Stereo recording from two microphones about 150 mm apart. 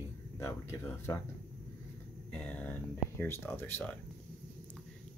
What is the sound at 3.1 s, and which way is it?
Speech, 15° left (ahead or behind).